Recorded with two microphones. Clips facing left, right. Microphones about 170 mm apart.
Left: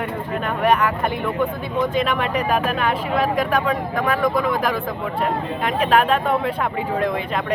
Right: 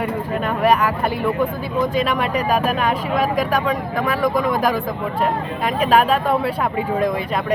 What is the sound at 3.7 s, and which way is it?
Speech, 10° right (ahead or behind).